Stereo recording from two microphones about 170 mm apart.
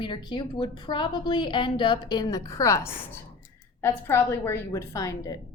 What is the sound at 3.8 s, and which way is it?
A woman's voice, 15° left (ahead or behind).